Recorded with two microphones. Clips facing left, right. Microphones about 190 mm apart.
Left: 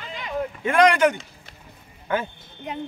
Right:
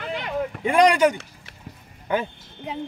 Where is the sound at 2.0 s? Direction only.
15° right (ahead or behind).